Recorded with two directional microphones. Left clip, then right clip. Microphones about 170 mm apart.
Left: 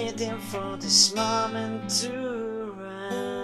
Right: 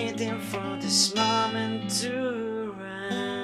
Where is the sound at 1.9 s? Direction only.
Centre (ahead or behind).